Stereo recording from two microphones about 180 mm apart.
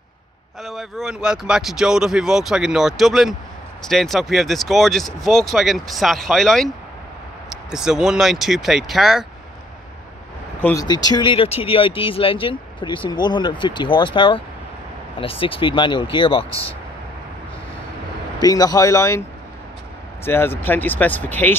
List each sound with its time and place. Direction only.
0.6 s speech: centre (ahead or behind)
10.8 s speech: 20° left (ahead or behind)
18.4 s speech: 20° left (ahead or behind)
20.2 s speech: 10° left (ahead or behind)